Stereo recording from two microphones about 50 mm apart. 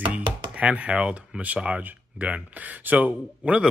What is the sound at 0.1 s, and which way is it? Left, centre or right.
A man's voice, right.